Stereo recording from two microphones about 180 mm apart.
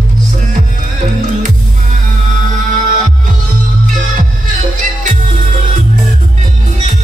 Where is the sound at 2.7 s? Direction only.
45° right (ahead or behind).